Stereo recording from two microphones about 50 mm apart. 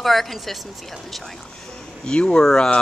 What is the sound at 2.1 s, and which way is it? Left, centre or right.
Speech, centre.